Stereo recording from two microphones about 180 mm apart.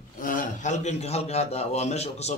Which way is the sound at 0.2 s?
50° left (ahead or behind).